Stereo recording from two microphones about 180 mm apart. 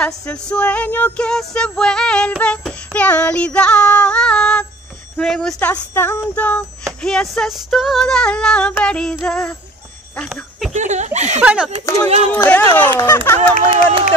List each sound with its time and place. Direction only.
0.0 s music: 5° left (ahead or behind)
6.2 s female singing: 10° left (ahead or behind)
10.1 s speech: 5° left (ahead or behind)
10.7 s speech: 40° right (ahead or behind)
11.4 s female singing: 5° right (ahead or behind)
12.3 s music: 10° left (ahead or behind)